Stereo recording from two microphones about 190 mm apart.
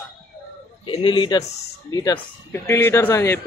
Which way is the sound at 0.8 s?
25° left (ahead or behind).